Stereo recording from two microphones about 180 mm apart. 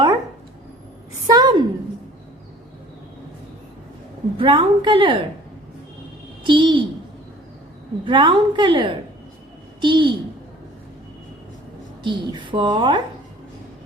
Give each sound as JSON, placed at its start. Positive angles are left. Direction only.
{"t": 1.3, "sound": "a sound", "side_deg": -25}
{"t": 4.4, "sound": "a woman's voice", "side_deg": -25}
{"t": 6.4, "sound": "a woman's voice", "side_deg": -25}
{"t": 8.0, "sound": "a woman's voice", "side_deg": -25}
{"t": 12.0, "sound": "a woman's voice", "side_deg": -25}